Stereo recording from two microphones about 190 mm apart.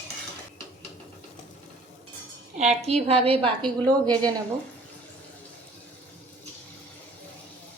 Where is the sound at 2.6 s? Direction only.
35° right (ahead or behind).